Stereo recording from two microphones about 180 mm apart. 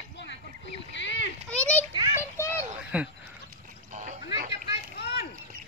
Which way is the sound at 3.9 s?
45° right (ahead or behind).